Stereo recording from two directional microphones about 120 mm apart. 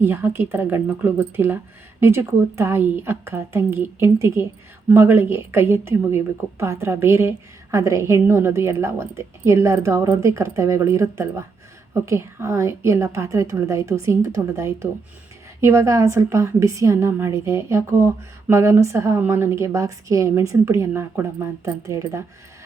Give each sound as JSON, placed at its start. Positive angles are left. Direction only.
{"t": 0.0, "sound": "a woman's voice", "side_deg": -15}